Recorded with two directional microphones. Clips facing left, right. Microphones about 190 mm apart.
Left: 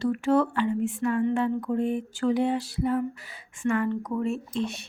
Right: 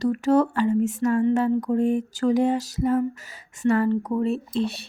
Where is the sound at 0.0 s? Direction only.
40° right (ahead or behind).